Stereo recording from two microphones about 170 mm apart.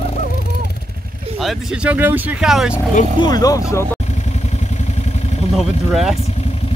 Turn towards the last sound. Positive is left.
turn(degrees=0)  # may be behind; listen again after turning